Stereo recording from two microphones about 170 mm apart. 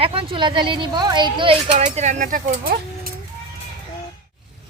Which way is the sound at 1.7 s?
45° right (ahead or behind).